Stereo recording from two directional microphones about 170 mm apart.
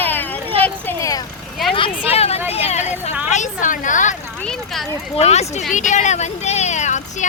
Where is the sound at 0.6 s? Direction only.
15° left (ahead or behind).